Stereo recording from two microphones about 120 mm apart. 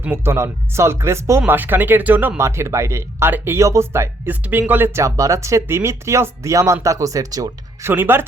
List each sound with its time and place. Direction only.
0.0 s speech: 20° right (ahead or behind)
7.9 s speech: 15° right (ahead or behind)